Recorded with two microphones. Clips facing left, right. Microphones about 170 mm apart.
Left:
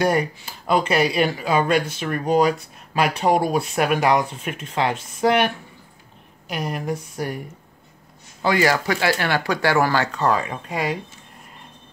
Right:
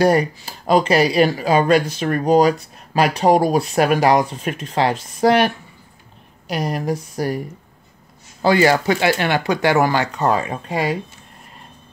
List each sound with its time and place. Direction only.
0.0 s speech: 35° right (ahead or behind)
8.4 s speech: 30° right (ahead or behind)